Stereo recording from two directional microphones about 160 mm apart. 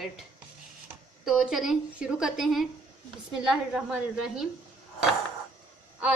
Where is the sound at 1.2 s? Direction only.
5° right (ahead or behind).